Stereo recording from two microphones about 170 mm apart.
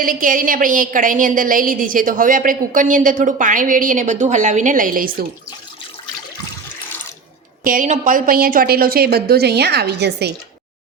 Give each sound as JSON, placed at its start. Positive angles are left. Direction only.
{"t": 0.0, "sound": "a woman's voice", "side_deg": -55}
{"t": 7.6, "sound": "a woman's voice", "side_deg": -50}